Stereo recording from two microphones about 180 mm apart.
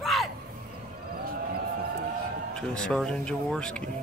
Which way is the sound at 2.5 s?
5° left (ahead or behind).